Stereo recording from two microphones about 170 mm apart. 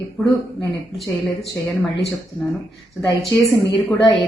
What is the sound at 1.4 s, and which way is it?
Speech, 15° left (ahead or behind).